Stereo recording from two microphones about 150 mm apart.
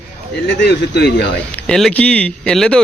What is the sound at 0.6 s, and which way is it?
Speech, 90° left.